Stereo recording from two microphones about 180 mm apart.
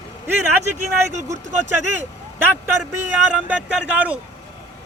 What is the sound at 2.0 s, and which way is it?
A man's voice, 10° right (ahead or behind).